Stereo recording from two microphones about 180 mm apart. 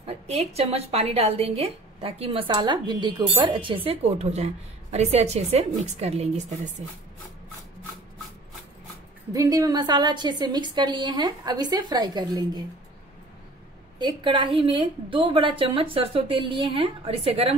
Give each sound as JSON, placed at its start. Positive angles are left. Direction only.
{"t": 0.0, "sound": "a woman's voice", "side_deg": -35}
{"t": 9.3, "sound": "a woman's voice", "side_deg": -20}
{"t": 13.9, "sound": "a woman's voice", "side_deg": -25}